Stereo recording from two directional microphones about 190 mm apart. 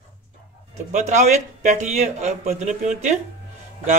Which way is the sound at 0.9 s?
40° right (ahead or behind).